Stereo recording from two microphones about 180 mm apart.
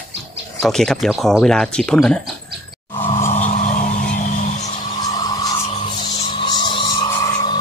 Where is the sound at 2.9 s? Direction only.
30° left (ahead or behind).